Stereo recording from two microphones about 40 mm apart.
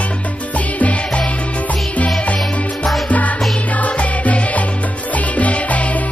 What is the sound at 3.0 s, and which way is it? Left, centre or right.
Music, left.